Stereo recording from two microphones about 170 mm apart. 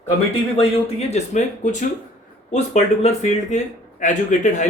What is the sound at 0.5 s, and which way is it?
Speech, 40° left (ahead or behind).